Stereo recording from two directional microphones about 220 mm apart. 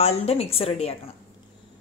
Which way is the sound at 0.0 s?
30° left (ahead or behind).